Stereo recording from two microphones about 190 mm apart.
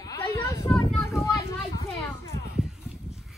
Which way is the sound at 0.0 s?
15° left (ahead or behind).